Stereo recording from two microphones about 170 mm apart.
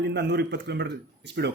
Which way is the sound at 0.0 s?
85° right.